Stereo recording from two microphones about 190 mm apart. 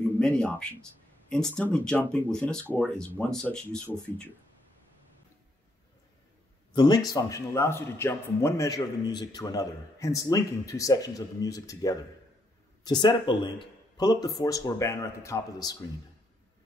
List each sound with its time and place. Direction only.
0.2 s a man's voice: 5° left (ahead or behind)
6.7 s a man's voice: 20° left (ahead or behind)